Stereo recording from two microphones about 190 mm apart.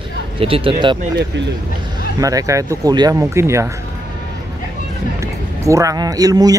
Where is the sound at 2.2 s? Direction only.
20° right (ahead or behind).